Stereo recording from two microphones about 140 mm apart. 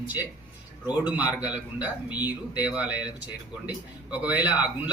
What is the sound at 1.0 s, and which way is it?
Speech, 10° right (ahead or behind).